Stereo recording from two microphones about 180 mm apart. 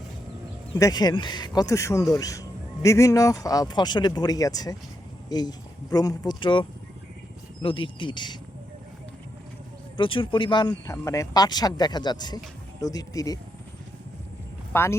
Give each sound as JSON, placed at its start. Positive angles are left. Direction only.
{"t": 0.8, "sound": "speech", "side_deg": 20}
{"t": 10.0, "sound": "speech", "side_deg": 30}
{"t": 14.7, "sound": "speech", "side_deg": 15}